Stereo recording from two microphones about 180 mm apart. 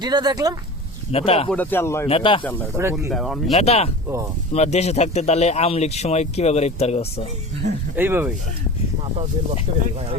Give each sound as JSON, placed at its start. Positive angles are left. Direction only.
{"t": 0.0, "sound": "speech", "side_deg": -20}
{"t": 1.1, "sound": "speech", "side_deg": 35}
{"t": 1.5, "sound": "speech", "side_deg": 10}
{"t": 2.0, "sound": "speech", "side_deg": 30}
{"t": 3.1, "sound": "speech", "side_deg": 0}
{"t": 3.5, "sound": "speech", "side_deg": 35}
{"t": 7.9, "sound": "speech", "side_deg": -10}
{"t": 9.7, "sound": "speech", "side_deg": -35}